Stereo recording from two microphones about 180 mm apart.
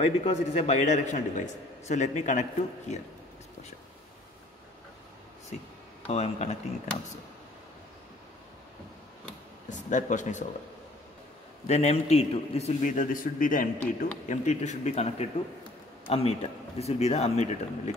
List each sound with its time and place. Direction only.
0.0 s a man's voice: 35° left (ahead or behind)
6.0 s a man's voice: 35° left (ahead or behind)
9.7 s speech: 45° left (ahead or behind)
11.6 s a man's voice: 35° left (ahead or behind)